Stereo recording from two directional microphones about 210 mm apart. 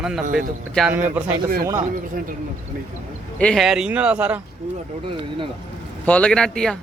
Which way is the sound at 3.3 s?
5° left (ahead or behind).